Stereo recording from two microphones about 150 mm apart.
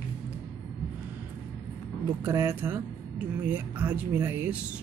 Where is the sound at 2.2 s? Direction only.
15° right (ahead or behind).